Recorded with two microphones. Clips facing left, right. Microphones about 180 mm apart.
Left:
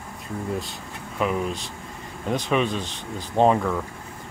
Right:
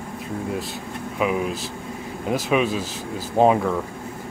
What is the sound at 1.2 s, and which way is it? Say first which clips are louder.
Speech: right 2 dB; 5° right (ahead or behind).